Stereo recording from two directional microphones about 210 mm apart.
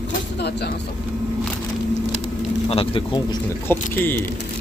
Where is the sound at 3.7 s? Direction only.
10° left (ahead or behind).